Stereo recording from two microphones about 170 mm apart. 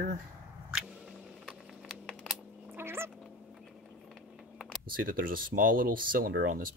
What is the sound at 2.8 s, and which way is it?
Cat, 15° right (ahead or behind).